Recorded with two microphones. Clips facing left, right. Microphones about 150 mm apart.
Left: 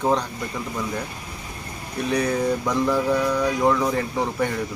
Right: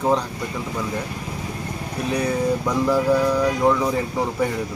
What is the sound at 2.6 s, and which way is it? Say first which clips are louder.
Speech: right 2 dB; 5° right (ahead or behind).